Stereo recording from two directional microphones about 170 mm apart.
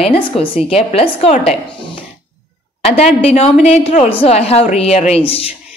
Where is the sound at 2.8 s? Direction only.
35° left (ahead or behind).